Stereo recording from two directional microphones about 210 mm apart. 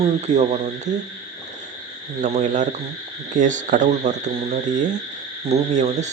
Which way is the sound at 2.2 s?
35° right (ahead or behind).